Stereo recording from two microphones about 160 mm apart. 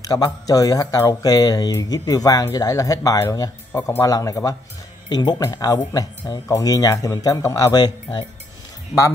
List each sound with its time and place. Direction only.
0.0 s speech: 25° left (ahead or behind)